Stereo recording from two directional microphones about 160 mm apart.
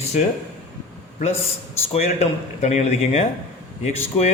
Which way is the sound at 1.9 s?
40° left (ahead or behind).